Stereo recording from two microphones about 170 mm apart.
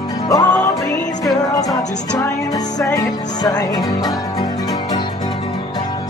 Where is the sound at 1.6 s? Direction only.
20° left (ahead or behind).